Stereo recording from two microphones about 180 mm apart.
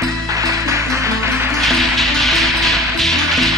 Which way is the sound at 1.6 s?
Centre (ahead or behind).